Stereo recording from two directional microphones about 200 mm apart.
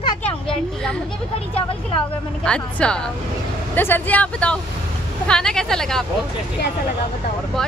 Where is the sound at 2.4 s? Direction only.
5° left (ahead or behind).